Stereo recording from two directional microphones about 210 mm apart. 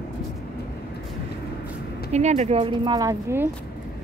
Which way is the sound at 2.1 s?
30° right (ahead or behind).